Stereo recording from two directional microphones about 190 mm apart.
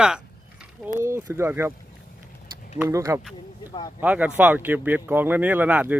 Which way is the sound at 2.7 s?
15° right (ahead or behind).